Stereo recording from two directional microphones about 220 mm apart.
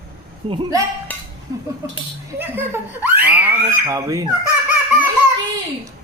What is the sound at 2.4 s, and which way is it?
Speech, 10° right (ahead or behind).